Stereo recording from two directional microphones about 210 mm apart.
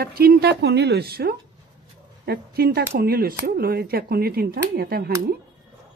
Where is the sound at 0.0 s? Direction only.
45° right (ahead or behind).